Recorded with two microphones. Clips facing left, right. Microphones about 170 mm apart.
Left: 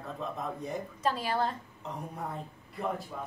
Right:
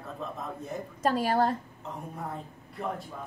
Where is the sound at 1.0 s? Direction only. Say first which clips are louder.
Right 5 dB; 50° right (ahead or behind).